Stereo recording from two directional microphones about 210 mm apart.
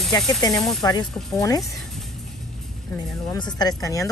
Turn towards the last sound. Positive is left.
turn(degrees=15)  # may be behind; listen again after turning